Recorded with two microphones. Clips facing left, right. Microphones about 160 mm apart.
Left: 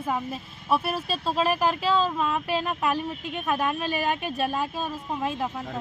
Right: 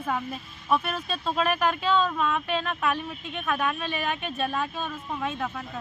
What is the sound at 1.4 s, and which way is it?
Speech, 30° left (ahead or behind).